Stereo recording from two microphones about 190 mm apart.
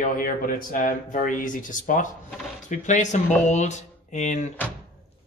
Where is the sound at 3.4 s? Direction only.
40° left (ahead or behind).